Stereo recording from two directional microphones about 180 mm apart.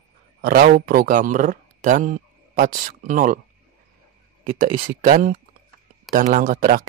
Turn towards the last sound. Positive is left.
turn(degrees=-50)  # may be behind; listen again after turning